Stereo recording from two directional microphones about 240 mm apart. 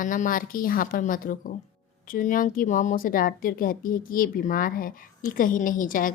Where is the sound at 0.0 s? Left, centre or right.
Left.